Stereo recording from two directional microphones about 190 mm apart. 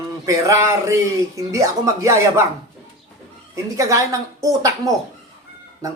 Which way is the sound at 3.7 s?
15° right (ahead or behind).